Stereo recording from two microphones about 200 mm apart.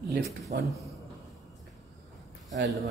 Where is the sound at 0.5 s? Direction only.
50° right (ahead or behind).